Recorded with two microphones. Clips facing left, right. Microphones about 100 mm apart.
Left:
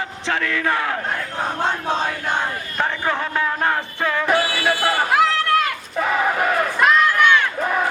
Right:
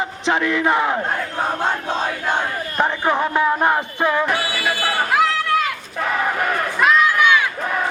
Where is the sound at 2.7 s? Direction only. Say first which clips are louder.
Right 4 dB; 15° right (ahead or behind).